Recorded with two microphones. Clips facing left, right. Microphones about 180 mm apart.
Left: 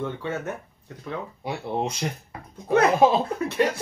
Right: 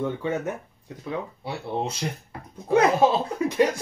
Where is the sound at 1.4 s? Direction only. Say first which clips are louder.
Left 5 dB; 15° left (ahead or behind).